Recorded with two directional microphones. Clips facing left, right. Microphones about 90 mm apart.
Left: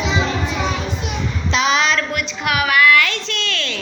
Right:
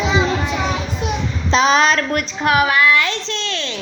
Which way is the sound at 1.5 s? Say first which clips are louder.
Right 4 dB; 40° right (ahead or behind).